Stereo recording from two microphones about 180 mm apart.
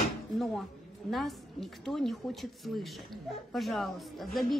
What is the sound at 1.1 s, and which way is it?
A woman's voice, centre (ahead or behind).